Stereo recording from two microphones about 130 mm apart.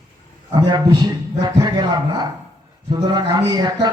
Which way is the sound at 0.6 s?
35° right (ahead or behind).